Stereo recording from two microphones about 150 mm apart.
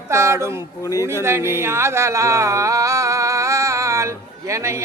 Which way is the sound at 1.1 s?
15° right (ahead or behind).